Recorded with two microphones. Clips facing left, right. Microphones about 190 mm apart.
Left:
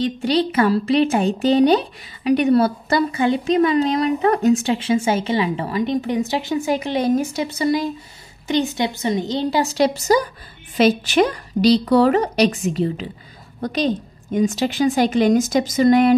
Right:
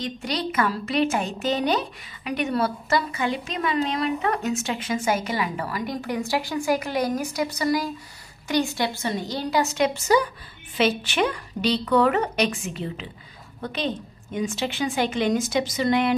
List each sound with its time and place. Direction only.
0.0 s a woman's voice: 30° left (ahead or behind)